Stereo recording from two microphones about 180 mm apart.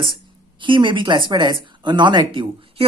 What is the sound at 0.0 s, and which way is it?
Speech, 25° right (ahead or behind).